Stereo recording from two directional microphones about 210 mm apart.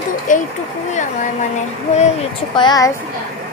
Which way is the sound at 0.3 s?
40° left (ahead or behind).